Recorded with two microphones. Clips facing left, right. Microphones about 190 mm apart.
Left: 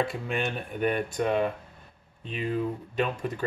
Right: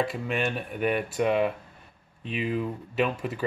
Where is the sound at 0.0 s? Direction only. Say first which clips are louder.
Right 1 dB; centre (ahead or behind).